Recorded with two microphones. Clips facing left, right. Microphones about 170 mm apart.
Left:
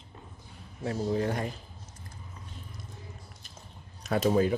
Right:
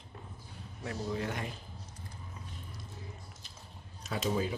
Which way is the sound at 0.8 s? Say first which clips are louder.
Left 7 dB; 35° left (ahead or behind).